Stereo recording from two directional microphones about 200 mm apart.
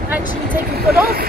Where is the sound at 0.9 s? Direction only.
50° right (ahead or behind).